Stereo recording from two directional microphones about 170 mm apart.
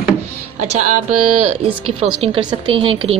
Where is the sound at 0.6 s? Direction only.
45° right (ahead or behind).